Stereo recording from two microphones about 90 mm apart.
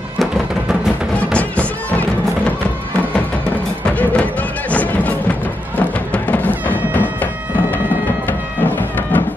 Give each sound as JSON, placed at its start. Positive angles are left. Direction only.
{"t": 1.3, "sound": "music", "side_deg": 15}
{"t": 4.6, "sound": "music", "side_deg": 15}
{"t": 8.3, "sound": "music", "side_deg": 20}